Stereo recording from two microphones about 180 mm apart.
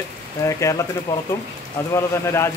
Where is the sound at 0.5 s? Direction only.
15° left (ahead or behind).